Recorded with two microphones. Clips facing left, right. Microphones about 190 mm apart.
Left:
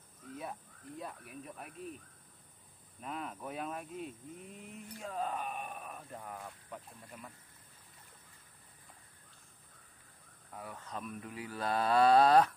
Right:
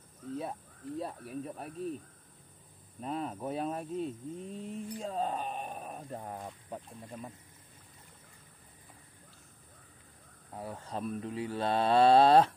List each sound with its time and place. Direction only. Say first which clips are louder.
0.4 s speech: right 1 dB; 30° right (ahead or behind)
3.0 s speech: right 6 dB; 30° right (ahead or behind)
7.0 s mantra: right 7 dB; 25° right (ahead or behind)
10.5 s mantra: right 5 dB; 30° right (ahead or behind)